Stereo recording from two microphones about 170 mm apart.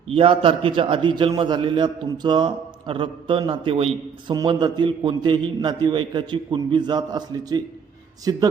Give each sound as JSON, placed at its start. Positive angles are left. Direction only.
{"t": 0.1, "sound": "a man's voice", "side_deg": -35}